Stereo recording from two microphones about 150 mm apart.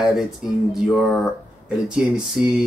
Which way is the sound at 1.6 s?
5° right (ahead or behind).